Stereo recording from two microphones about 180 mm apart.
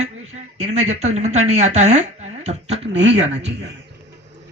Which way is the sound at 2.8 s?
75° right (ahead or behind).